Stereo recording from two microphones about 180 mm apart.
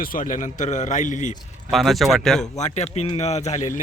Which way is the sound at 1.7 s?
Centre (ahead or behind).